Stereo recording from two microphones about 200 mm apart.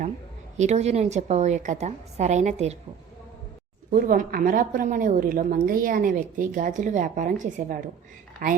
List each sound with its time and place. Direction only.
0.5 s a woman's voice: 35° right (ahead or behind)
4.0 s a woman's voice: 45° right (ahead or behind)